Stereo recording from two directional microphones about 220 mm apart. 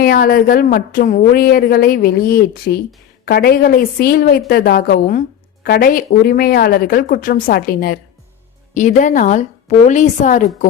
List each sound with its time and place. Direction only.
0.0 s a woman's voice: 45° left (ahead or behind)